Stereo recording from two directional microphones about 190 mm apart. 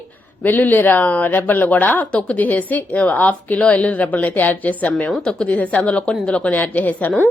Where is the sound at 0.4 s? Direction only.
10° left (ahead or behind).